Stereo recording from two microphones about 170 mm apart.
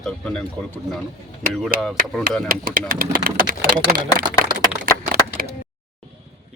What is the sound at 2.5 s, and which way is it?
Speech, 55° right (ahead or behind).